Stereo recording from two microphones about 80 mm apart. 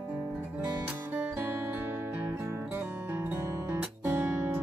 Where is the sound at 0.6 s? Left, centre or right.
Right.